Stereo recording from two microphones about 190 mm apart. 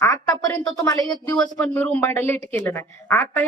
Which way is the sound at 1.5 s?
10° left (ahead or behind).